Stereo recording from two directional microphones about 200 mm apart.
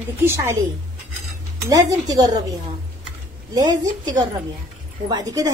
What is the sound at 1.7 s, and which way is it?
Speech, 20° right (ahead or behind).